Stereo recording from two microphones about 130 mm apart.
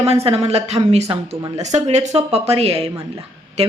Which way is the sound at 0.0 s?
50° right (ahead or behind).